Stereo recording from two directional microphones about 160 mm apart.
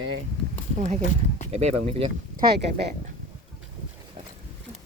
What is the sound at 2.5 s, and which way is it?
Speech, 90° right.